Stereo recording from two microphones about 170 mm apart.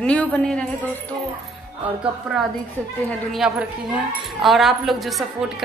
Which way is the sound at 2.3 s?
Centre (ahead or behind).